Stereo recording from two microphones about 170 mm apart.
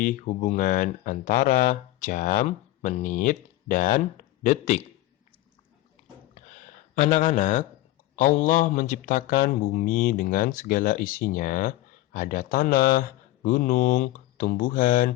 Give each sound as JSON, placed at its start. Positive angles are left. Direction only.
{"t": 0.0, "sound": "speech", "side_deg": 50}
{"t": 6.3, "sound": "a sound", "side_deg": 45}
{"t": 8.1, "sound": "speech", "side_deg": 50}